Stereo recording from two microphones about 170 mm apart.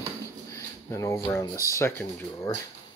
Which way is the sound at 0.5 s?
15° left (ahead or behind).